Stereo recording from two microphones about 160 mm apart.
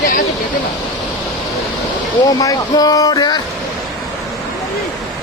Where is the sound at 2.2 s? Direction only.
20° left (ahead or behind).